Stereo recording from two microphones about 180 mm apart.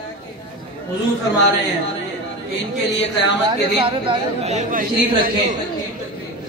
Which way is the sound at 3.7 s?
30° right (ahead or behind).